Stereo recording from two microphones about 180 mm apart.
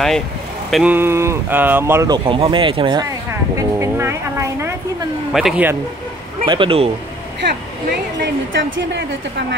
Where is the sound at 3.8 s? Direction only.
15° right (ahead or behind).